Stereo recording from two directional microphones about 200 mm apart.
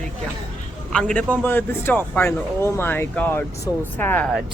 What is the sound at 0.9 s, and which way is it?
Speech, 5° left (ahead or behind).